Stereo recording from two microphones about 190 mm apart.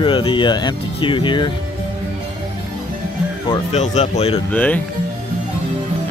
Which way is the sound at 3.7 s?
35° left (ahead or behind).